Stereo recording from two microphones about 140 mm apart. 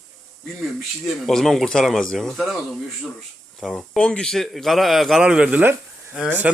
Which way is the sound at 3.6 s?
5° left (ahead or behind).